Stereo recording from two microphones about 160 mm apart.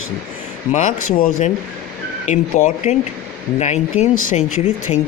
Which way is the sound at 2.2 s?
45° left (ahead or behind).